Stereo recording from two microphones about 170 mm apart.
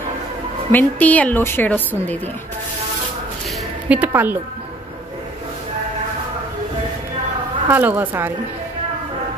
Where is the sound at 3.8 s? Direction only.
10° right (ahead or behind).